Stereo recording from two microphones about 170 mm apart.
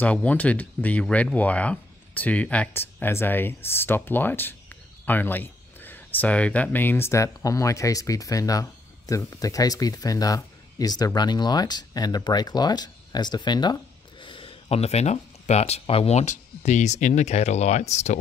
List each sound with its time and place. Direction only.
0.0 s speech: 10° left (ahead or behind); by 18.1 s 40° left (ahead or behind)